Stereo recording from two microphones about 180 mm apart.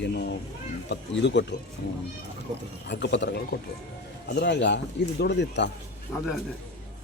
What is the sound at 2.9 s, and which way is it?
A man's voice, 70° left (ahead or behind).